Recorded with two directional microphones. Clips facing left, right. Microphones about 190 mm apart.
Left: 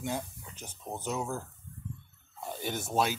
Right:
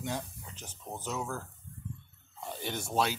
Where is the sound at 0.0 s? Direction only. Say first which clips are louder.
Left 2 dB; 10° left (ahead or behind).